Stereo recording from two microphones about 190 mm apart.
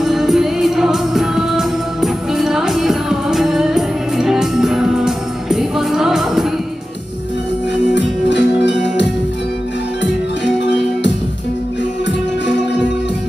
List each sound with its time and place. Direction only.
0.0 s music: centre (ahead or behind)
7.9 s music: 65° left (ahead or behind)